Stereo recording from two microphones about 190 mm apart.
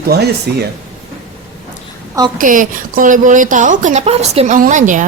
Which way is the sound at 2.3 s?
45° right (ahead or behind).